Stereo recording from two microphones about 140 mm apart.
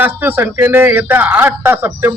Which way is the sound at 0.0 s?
15° right (ahead or behind).